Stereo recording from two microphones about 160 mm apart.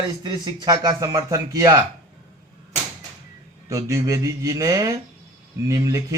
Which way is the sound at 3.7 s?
20° right (ahead or behind).